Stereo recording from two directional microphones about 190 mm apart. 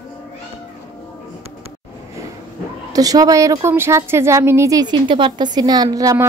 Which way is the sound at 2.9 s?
20° right (ahead or behind).